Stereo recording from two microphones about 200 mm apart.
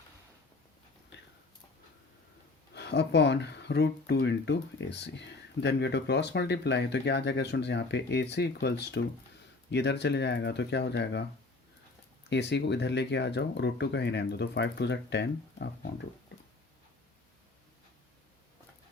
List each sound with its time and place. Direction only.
2.7 s speech: 60° left (ahead or behind)
12.3 s speech: 60° left (ahead or behind)